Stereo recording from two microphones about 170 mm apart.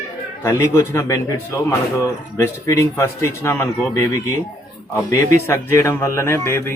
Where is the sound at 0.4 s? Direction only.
15° left (ahead or behind).